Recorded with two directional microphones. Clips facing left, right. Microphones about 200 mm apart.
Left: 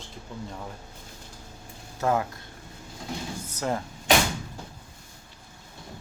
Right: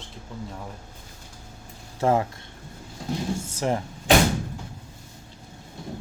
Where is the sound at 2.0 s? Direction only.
30° right (ahead or behind).